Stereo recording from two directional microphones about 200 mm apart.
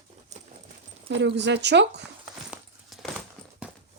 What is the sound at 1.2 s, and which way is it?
Speech, 60° right (ahead or behind).